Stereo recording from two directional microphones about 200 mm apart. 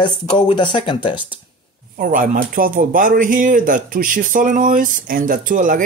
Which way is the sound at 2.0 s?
45° right (ahead or behind).